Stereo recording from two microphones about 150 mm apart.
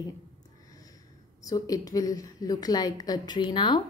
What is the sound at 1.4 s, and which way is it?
A woman's voice, 25° left (ahead or behind).